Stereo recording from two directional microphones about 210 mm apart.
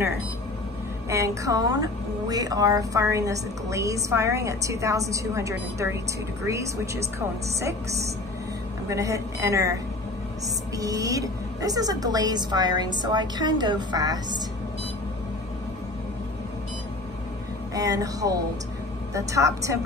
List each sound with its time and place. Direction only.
1.0 s a woman's voice: 15° right (ahead or behind)
10.8 s a woman's voice: 15° right (ahead or behind)
17.7 s a woman's voice: 15° right (ahead or behind)